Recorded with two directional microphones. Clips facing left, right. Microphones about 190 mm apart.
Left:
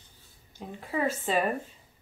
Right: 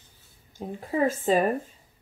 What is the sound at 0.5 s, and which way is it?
Speech, 45° right (ahead or behind).